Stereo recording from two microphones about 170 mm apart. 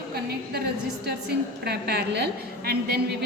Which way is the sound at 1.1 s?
70° right (ahead or behind).